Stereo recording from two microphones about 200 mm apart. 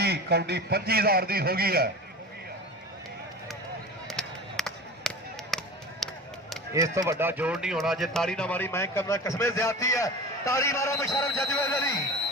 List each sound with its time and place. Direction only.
0.0 s a man's voice: 55° right (ahead or behind)
4.1 s a sound: centre (ahead or behind)
6.7 s speech: 15° right (ahead or behind); by 12.0 s 10° left (ahead or behind)